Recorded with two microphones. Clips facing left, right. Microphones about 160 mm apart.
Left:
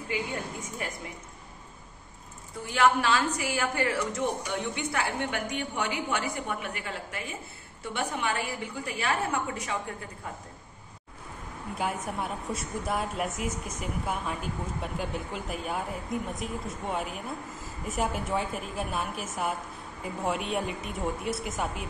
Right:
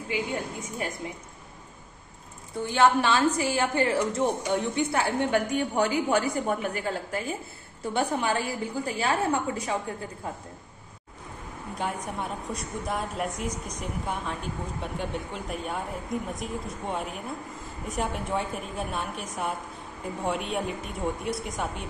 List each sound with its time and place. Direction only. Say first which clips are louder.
2.6 s a woman's voice: right 3 dB; 25° right (ahead or behind)
11.8 s speech: even; 5° left (ahead or behind)